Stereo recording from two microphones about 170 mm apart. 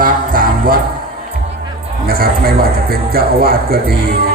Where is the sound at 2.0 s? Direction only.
60° right (ahead or behind).